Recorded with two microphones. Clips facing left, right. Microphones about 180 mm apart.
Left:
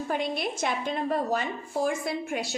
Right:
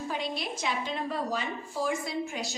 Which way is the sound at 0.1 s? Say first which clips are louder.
Left 6 dB; 55° left (ahead or behind).